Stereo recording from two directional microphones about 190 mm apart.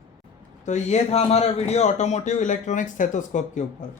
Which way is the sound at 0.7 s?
35° left (ahead or behind).